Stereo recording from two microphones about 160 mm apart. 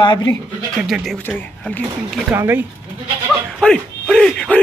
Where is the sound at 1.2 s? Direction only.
10° left (ahead or behind).